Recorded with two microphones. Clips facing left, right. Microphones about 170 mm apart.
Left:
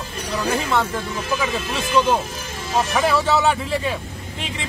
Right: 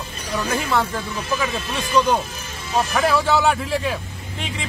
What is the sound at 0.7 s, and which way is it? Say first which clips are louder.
Speech: even; centre (ahead or behind).